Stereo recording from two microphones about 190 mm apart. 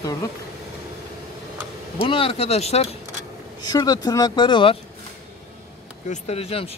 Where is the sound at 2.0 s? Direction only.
30° left (ahead or behind).